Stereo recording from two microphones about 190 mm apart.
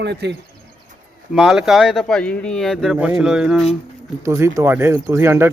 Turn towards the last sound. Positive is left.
turn(degrees=-10)  # may be behind; listen again after turning